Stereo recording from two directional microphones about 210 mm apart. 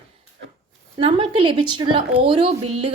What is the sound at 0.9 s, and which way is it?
A woman's voice, 25° right (ahead or behind).